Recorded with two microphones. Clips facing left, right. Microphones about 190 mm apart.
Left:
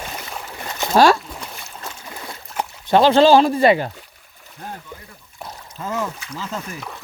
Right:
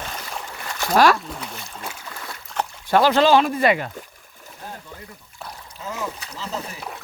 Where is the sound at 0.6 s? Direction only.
20° left (ahead or behind).